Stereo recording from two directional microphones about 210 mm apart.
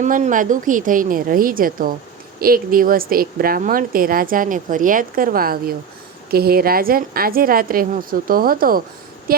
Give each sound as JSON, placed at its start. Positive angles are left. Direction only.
{"t": 0.0, "sound": "a woman's voice", "side_deg": -35}